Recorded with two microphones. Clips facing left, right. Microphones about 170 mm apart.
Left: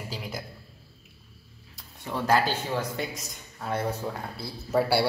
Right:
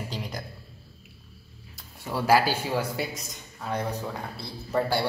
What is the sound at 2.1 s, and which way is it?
A man's voice, 10° right (ahead or behind).